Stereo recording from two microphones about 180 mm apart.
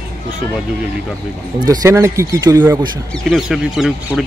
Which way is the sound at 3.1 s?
Centre (ahead or behind).